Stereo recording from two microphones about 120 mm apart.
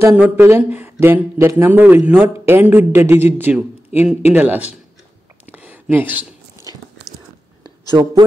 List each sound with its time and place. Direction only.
0.0 s a man's voice: 20° right (ahead or behind)
5.5 s a sound: 15° right (ahead or behind)
8.0 s a man's voice: 30° right (ahead or behind)